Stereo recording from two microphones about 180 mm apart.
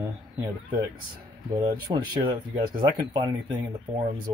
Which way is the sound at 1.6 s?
25° right (ahead or behind).